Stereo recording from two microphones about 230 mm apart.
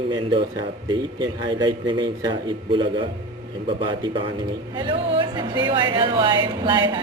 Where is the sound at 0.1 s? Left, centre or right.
Centre.